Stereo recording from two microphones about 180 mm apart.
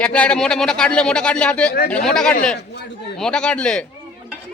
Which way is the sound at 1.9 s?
5° left (ahead or behind).